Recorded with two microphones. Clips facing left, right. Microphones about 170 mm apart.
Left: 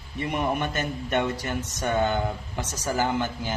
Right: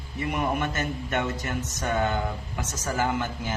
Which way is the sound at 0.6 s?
20° left (ahead or behind).